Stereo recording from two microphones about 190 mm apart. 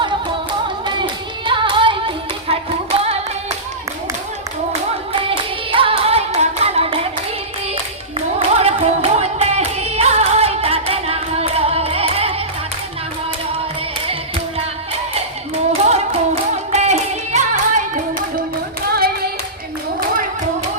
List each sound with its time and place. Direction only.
0.9 s hands: 25° right (ahead or behind)
5.7 s music: 30° right (ahead or behind)
8.4 s music: 30° right (ahead or behind)
15.9 s music: 35° right (ahead or behind)
18.9 s singing: 50° right (ahead or behind)